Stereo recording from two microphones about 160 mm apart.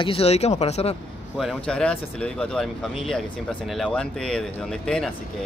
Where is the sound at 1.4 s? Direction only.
5° left (ahead or behind).